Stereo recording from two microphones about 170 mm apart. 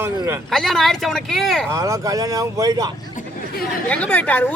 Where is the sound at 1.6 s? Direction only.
20° right (ahead or behind).